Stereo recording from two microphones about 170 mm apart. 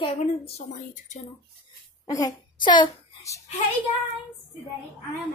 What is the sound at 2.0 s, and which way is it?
A child's voice, 20° left (ahead or behind).